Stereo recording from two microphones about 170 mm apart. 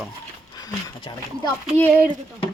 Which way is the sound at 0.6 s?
25° left (ahead or behind).